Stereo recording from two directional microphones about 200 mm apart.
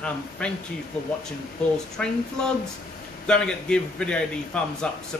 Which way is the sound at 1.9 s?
5° left (ahead or behind).